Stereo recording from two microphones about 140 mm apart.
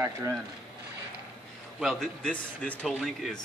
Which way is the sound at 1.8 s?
5° left (ahead or behind).